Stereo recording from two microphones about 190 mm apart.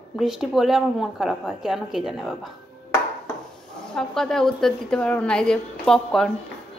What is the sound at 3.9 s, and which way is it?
A woman's voice, 5° left (ahead or behind).